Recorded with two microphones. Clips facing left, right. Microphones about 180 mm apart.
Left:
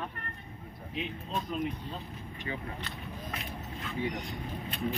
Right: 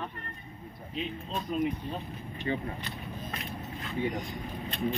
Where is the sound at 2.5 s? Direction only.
35° right (ahead or behind).